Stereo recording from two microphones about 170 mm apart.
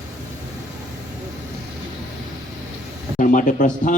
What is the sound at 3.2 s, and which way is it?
Speech, 50° left (ahead or behind).